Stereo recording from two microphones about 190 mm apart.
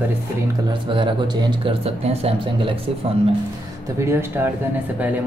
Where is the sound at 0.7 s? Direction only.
25° right (ahead or behind).